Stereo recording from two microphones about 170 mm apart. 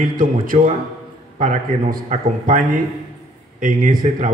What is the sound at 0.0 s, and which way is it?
A man's voice, 55° right (ahead or behind).